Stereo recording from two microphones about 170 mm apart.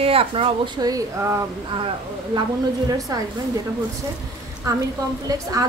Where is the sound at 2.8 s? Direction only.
20° right (ahead or behind).